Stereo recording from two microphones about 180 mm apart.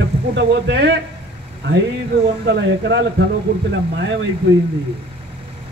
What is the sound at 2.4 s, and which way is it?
Speech, 70° right (ahead or behind).